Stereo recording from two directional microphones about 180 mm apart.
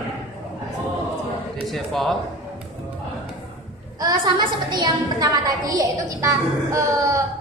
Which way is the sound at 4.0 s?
25° right (ahead or behind).